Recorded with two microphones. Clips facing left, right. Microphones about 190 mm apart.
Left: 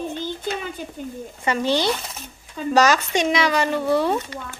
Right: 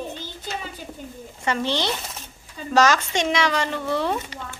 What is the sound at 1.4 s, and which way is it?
Speech, 10° left (ahead or behind).